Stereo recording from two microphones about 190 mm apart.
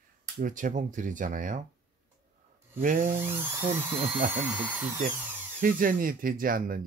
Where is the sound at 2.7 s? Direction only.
45° right (ahead or behind).